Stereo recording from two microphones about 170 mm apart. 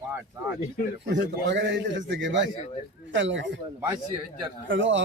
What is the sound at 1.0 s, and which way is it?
A man's voice, 90° right.